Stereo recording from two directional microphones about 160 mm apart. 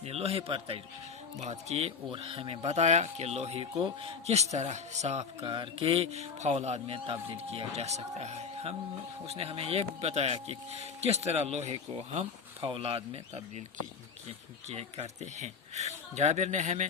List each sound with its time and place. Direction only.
0.0 s speech: 40° right (ahead or behind)
5.5 s speech: 35° right (ahead or behind)